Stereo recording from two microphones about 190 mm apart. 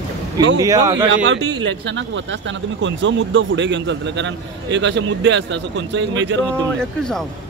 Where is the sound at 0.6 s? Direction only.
20° right (ahead or behind).